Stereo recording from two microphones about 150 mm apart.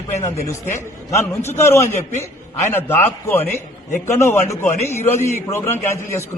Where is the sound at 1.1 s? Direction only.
15° left (ahead or behind).